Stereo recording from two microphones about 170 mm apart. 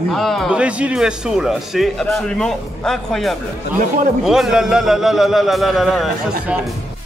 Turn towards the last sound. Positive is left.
turn(degrees=0)  # may be behind; listen again after turning